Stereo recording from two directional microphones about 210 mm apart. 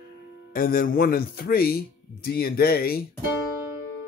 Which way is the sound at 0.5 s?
45° left (ahead or behind).